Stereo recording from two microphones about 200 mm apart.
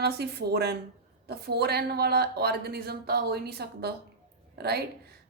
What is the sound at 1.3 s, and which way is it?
A woman's voice, 55° right (ahead or behind).